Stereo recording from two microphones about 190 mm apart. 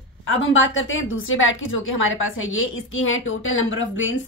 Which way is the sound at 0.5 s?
90° left.